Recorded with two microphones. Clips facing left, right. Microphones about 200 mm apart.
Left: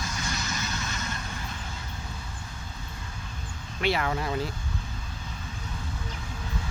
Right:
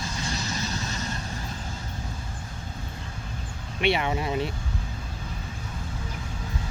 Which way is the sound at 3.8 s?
20° right (ahead or behind).